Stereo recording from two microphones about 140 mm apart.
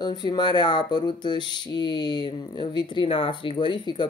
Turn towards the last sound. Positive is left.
turn(degrees=35)  # may be behind; listen again after turning